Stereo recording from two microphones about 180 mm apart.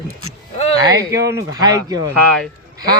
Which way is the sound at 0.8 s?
15° right (ahead or behind).